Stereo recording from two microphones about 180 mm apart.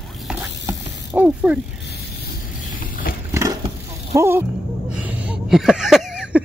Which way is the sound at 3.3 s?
15° right (ahead or behind).